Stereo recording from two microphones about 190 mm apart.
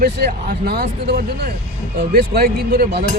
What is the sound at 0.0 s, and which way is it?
Speech, 50° right (ahead or behind).